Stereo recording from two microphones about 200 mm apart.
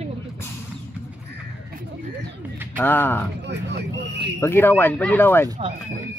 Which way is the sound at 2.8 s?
10° left (ahead or behind).